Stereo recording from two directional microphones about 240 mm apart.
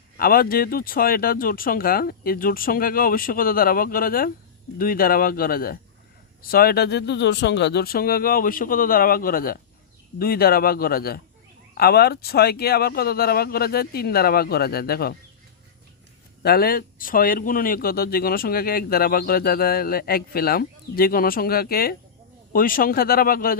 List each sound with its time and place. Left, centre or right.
0.2 s speech: left
16.4 s speech: left